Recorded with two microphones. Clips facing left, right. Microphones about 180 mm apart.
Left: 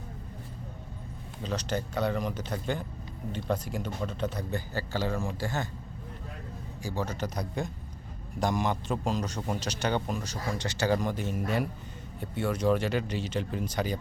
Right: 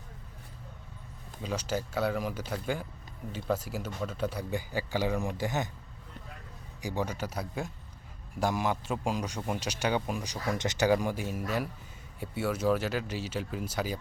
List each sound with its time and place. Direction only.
1.4 s a man's voice: 10° right (ahead or behind)
6.8 s a man's voice: 15° right (ahead or behind)